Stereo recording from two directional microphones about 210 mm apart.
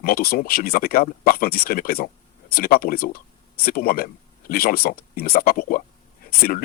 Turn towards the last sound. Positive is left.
turn(degrees=45)  # may be behind; listen again after turning